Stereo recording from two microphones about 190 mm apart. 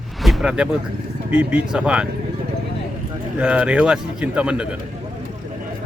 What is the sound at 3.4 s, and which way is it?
Speech, 5° right (ahead or behind).